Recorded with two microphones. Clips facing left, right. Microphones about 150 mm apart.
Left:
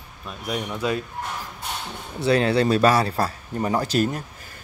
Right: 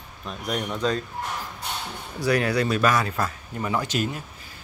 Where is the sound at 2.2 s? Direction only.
25° left (ahead or behind).